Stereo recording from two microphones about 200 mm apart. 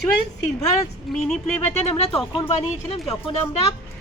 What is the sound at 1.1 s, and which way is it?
Speech, centre (ahead or behind).